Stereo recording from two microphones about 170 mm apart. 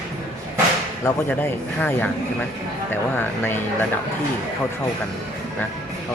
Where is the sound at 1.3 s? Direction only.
10° left (ahead or behind).